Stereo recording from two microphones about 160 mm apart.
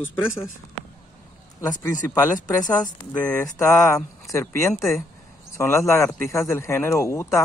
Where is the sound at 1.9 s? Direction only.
55° left (ahead or behind).